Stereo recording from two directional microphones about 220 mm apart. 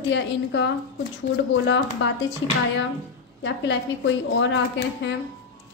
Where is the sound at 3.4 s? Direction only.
55° left (ahead or behind).